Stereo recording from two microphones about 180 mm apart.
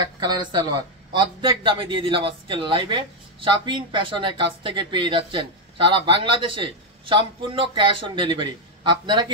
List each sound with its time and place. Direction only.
0.0 s a man's voice: 25° right (ahead or behind)